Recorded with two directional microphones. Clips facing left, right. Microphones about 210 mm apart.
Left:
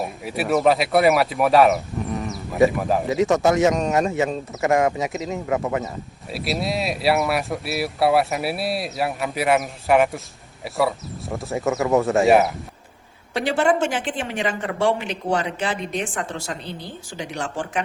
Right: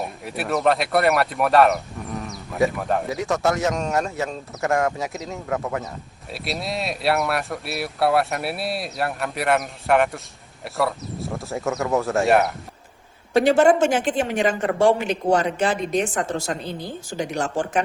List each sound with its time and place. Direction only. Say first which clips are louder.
0.0 s speech: left 3 dB; centre (ahead or behind)
13.3 s speech: right 5 dB; 45° right (ahead or behind)